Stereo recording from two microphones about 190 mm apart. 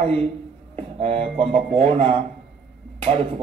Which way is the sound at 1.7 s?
25° right (ahead or behind).